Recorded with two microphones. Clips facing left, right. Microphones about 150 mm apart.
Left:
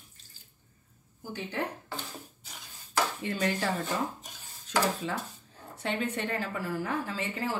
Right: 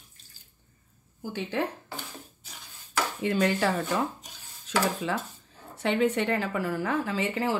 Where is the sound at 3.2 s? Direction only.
85° right.